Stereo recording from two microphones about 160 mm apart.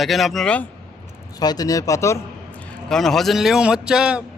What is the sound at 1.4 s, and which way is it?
Speech, 25° left (ahead or behind).